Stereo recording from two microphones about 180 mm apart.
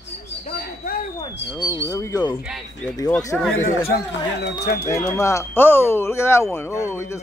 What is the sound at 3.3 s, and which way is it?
Speech, 5° left (ahead or behind).